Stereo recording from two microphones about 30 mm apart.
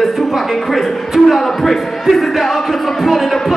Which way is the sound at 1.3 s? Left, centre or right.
Centre.